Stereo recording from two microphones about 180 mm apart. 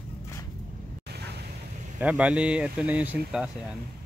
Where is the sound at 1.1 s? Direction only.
65° right (ahead or behind).